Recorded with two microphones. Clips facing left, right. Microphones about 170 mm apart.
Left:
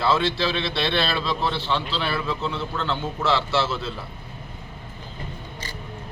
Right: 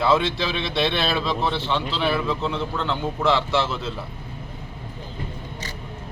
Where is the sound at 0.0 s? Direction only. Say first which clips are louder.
Right 1 dB; 15° right (ahead or behind).